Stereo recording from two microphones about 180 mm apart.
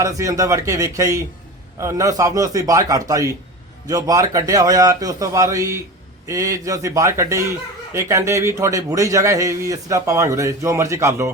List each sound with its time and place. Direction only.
0.0 s a man's voice: 20° right (ahead or behind)